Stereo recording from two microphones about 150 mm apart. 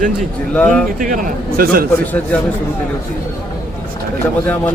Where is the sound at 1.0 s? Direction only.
70° right (ahead or behind).